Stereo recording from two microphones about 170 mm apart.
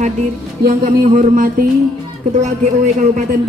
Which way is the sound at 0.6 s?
60° right (ahead or behind).